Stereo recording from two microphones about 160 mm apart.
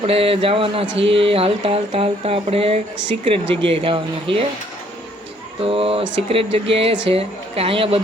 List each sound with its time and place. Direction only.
0.0 s speech: 35° right (ahead or behind)
5.6 s speech: 35° right (ahead or behind)